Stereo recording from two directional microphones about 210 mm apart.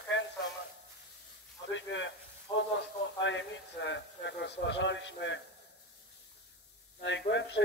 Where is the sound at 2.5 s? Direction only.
25° left (ahead or behind).